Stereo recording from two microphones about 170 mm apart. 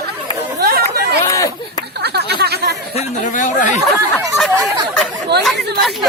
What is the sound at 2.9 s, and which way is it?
Speech, 50° left (ahead or behind).